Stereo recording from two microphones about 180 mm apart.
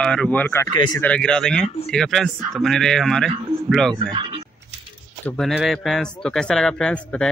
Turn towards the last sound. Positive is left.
turn(degrees=5)  # may be behind; listen again after turning